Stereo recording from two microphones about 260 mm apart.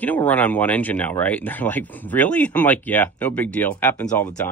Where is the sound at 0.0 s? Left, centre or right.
Centre.